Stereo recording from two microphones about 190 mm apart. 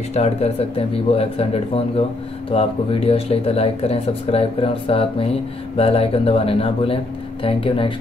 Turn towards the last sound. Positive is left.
turn(degrees=30)  # may be behind; listen again after turning